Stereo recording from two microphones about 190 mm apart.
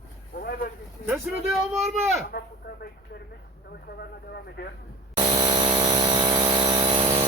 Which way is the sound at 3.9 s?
55° left (ahead or behind).